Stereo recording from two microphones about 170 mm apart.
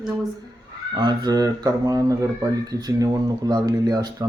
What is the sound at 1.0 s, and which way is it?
Speech, 25° right (ahead or behind).